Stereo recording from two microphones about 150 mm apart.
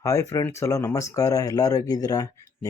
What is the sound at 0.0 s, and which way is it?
Speech, 20° left (ahead or behind).